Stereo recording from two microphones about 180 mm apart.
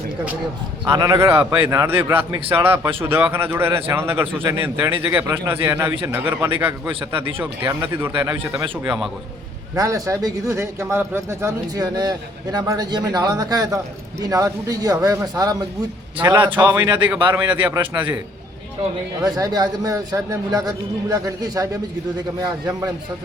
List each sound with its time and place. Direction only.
0.9 s a man's voice: 15° right (ahead or behind)
9.7 s a man's voice: 20° right (ahead or behind)
19.2 s a man's voice: 20° right (ahead or behind)